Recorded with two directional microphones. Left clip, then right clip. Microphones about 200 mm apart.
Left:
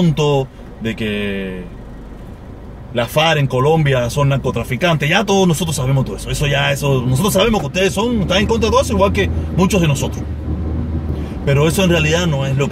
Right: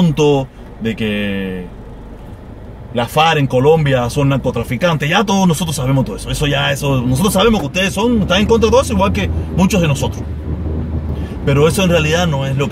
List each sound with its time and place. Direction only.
0.1 s speech: 10° right (ahead or behind)
2.9 s speech: 10° right (ahead or behind)
11.4 s speech: 10° right (ahead or behind)